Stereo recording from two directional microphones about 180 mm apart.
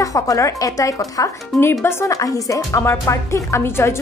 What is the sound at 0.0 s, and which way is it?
Speech, 20° left (ahead or behind).